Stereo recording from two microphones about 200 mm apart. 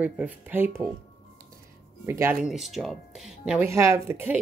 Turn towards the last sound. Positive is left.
turn(degrees=-10)  # may be behind; listen again after turning